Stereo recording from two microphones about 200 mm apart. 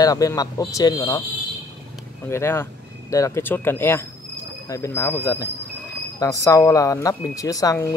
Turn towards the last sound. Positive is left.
turn(degrees=15)  # may be behind; listen again after turning